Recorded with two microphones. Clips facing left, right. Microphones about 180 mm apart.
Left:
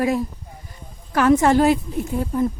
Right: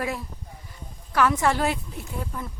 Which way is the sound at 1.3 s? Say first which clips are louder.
Left 9 dB; 45° left (ahead or behind).